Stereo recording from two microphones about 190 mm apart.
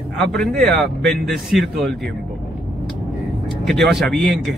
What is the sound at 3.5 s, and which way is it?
Speech, centre (ahead or behind).